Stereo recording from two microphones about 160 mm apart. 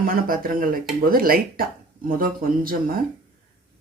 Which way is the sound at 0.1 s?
65° right (ahead or behind).